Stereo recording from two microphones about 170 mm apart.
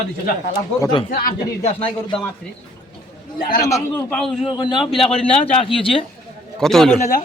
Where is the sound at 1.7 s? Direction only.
35° left (ahead or behind).